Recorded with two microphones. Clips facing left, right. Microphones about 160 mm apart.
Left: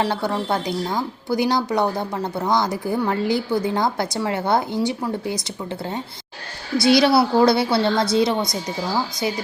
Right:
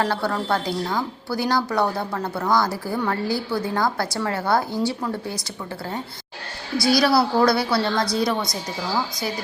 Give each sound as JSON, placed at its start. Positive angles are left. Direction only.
{"t": 0.0, "sound": "speech", "side_deg": 20}
{"t": 6.8, "sound": "speech", "side_deg": 25}